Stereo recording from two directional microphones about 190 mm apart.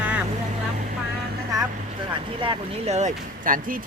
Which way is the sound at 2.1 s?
25° right (ahead or behind).